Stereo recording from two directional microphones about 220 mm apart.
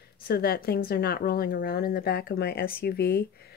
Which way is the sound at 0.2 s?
45° left (ahead or behind).